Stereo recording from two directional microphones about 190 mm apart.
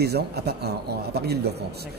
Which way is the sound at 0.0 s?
55° right (ahead or behind).